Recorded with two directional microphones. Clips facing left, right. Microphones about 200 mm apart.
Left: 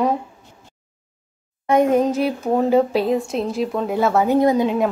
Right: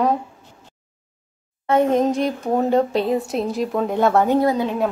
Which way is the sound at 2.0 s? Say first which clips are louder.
Even; centre (ahead or behind).